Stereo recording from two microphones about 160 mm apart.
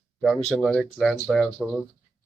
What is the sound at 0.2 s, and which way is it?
Speech, centre (ahead or behind).